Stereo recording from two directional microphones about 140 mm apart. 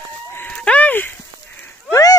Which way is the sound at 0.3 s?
15° left (ahead or behind).